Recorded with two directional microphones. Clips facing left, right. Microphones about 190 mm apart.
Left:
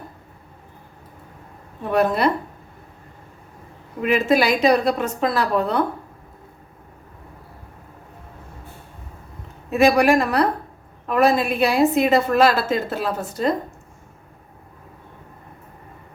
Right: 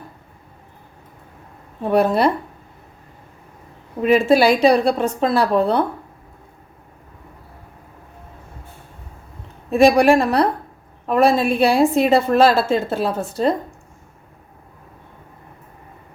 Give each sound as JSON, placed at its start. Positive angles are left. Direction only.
{"t": 1.9, "sound": "a woman's voice", "side_deg": -30}
{"t": 4.0, "sound": "a woman's voice", "side_deg": -30}
{"t": 9.7, "sound": "a woman's voice", "side_deg": -30}